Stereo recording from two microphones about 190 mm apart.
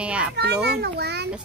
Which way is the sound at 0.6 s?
60° right (ahead or behind).